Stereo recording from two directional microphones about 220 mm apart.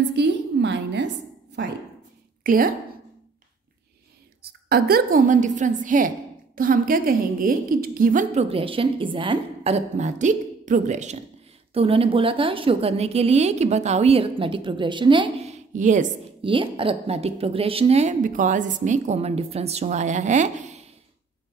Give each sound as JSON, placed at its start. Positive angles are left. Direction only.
{"t": 0.1, "sound": "a sound", "side_deg": -50}
{"t": 2.4, "sound": "a woman's voice", "side_deg": -40}
{"t": 4.4, "sound": "a woman's voice", "side_deg": -45}
{"t": 15.7, "sound": "a woman's voice", "side_deg": -35}
{"t": 16.4, "sound": "a woman's voice", "side_deg": -25}